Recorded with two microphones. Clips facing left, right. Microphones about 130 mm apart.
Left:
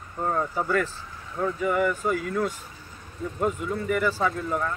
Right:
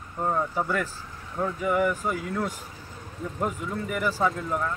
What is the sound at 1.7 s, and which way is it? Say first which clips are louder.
Speech: even; 10° right (ahead or behind).